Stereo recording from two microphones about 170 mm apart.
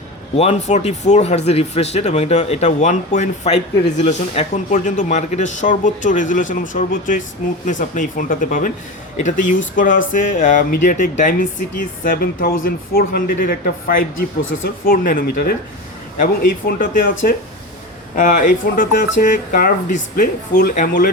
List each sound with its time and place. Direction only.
0.3 s speech: 35° left (ahead or behind); by 17.1 s 55° left (ahead or behind)
18.2 s speech: 50° left (ahead or behind)